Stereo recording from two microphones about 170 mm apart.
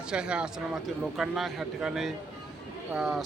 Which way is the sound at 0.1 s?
5° right (ahead or behind).